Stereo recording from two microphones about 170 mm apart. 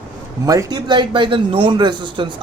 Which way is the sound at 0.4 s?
20° right (ahead or behind).